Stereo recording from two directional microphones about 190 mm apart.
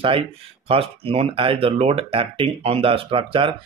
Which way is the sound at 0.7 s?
30° right (ahead or behind).